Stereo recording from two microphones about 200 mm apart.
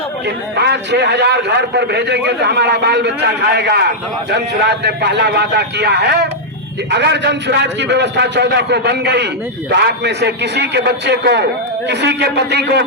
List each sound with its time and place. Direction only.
0.3 s a man's voice: 60° right (ahead or behind)